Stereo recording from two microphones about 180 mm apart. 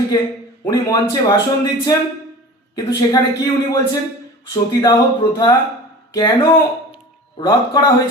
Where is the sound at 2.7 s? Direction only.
20° left (ahead or behind).